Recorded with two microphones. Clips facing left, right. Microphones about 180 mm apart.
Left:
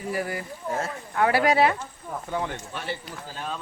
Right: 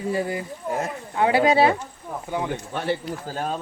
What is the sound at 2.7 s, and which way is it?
Speech, 55° right (ahead or behind).